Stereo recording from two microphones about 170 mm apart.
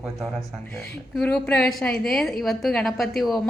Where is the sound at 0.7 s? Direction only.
15° left (ahead or behind).